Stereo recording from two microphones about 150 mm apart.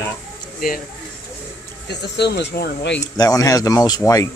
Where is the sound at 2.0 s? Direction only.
90° left.